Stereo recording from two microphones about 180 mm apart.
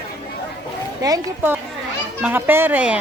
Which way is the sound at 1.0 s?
20° right (ahead or behind).